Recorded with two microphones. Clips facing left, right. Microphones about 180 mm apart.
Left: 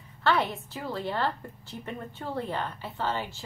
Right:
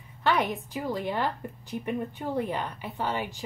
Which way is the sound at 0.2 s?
15° right (ahead or behind).